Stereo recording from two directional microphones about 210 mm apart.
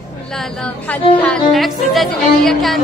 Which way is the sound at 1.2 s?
Centre (ahead or behind).